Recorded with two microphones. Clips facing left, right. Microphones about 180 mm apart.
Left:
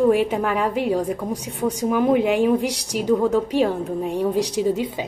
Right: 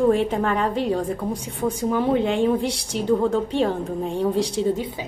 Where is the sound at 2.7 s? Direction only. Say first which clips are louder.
Even; 70° left (ahead or behind).